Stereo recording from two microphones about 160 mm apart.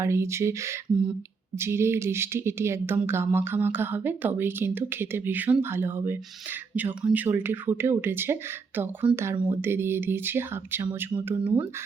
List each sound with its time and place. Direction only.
0.0 s speech: 15° right (ahead or behind)